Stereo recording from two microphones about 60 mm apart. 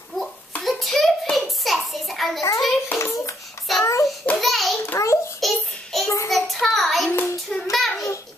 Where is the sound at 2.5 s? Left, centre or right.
Centre.